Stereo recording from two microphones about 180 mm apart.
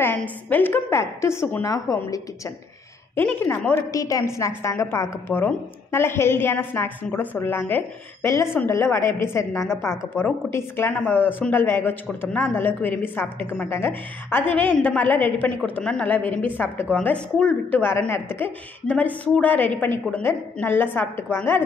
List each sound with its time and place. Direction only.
0.0 s a woman's voice: 10° left (ahead or behind)